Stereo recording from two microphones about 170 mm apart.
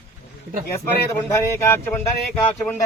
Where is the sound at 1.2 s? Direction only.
15° left (ahead or behind).